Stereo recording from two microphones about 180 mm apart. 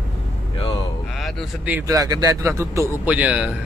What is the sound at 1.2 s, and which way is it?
Speech, 10° right (ahead or behind).